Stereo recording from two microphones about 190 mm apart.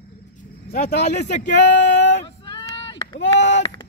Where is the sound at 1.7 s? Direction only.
70° left (ahead or behind).